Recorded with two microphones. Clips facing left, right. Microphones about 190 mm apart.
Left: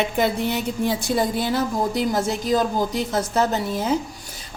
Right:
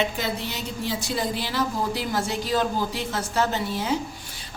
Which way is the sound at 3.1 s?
40° left (ahead or behind).